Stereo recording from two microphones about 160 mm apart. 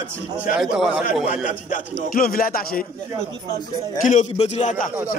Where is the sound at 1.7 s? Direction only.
60° left (ahead or behind).